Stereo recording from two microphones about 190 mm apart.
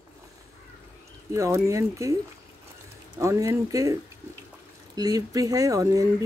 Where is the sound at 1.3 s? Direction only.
15° right (ahead or behind).